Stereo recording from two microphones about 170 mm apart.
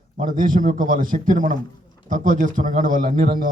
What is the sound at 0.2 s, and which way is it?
A man's voice, 50° right (ahead or behind).